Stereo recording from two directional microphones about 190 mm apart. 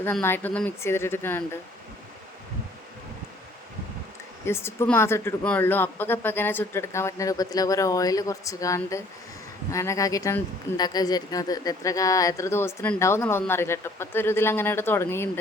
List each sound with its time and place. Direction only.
0.0 s speech: 10° left (ahead or behind)
4.4 s speech: 15° left (ahead or behind)